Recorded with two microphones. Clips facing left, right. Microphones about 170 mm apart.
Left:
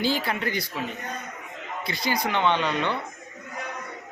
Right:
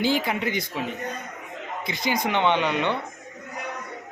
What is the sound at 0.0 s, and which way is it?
Speech, 15° right (ahead or behind).